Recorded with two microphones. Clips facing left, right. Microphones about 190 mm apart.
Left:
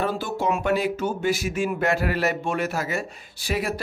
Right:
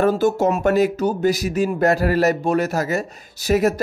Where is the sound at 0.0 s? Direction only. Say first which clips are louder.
Right 8 dB; 45° right (ahead or behind).